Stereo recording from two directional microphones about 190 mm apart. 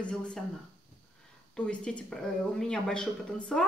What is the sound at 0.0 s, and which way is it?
Speech, 5° left (ahead or behind).